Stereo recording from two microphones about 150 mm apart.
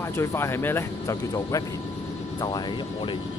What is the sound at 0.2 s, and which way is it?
Speech, 15° left (ahead or behind).